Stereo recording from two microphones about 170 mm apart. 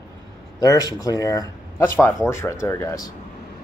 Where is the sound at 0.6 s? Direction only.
20° left (ahead or behind).